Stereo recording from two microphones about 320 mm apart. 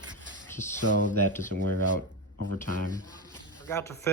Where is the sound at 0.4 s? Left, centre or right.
Centre.